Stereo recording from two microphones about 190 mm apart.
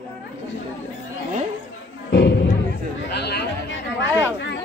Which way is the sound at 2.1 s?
60° left (ahead or behind).